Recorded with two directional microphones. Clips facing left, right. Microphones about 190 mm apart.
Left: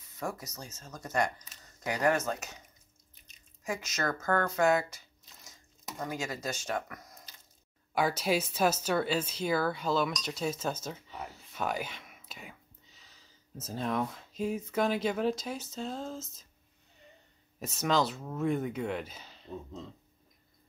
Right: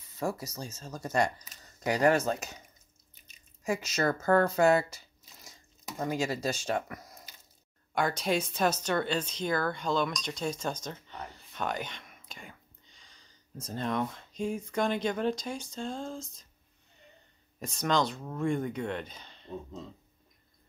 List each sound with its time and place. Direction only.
0.2 s speech: 30° right (ahead or behind)
3.6 s speech: 30° right (ahead or behind)
7.9 s speech: 5° left (ahead or behind)
17.6 s speech: 5° left (ahead or behind)